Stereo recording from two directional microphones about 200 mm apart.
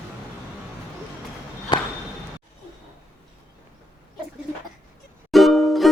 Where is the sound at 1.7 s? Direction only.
20° left (ahead or behind).